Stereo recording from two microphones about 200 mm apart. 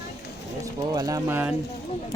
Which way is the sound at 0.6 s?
15° right (ahead or behind).